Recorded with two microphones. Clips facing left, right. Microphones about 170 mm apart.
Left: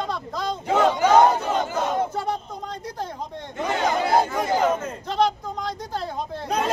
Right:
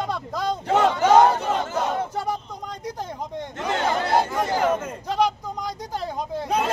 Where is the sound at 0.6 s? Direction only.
10° left (ahead or behind).